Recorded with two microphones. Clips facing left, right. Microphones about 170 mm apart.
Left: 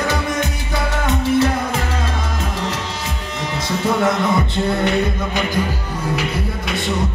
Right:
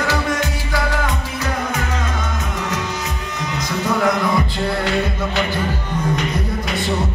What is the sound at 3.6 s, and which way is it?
Music, 25° left (ahead or behind).